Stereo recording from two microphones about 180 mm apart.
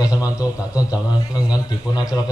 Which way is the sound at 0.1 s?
10° right (ahead or behind).